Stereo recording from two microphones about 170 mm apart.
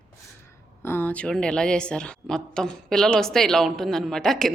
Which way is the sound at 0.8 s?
10° left (ahead or behind).